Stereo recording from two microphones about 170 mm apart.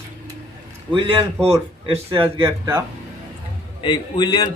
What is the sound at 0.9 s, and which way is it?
Speech, 25° right (ahead or behind).